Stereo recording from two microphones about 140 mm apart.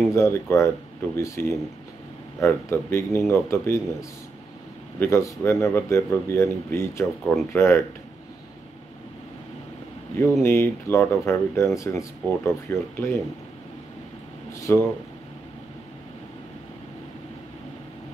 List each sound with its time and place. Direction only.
0.1 s speech: 20° left (ahead or behind)
4.9 s speech: 20° left (ahead or behind)
10.1 s speech: 20° left (ahead or behind)
14.5 s speech: 20° left (ahead or behind)